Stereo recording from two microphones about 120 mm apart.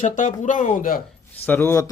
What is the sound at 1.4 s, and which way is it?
Speech, 15° left (ahead or behind).